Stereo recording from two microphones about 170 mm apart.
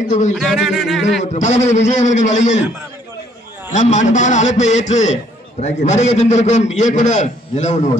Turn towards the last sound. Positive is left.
turn(degrees=45)  # may be behind; listen again after turning